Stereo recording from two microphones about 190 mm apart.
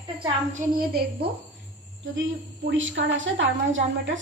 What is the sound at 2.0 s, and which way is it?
A woman's voice, 80° right.